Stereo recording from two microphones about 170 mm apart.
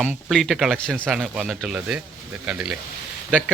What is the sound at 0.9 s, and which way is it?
Speech, 10° right (ahead or behind).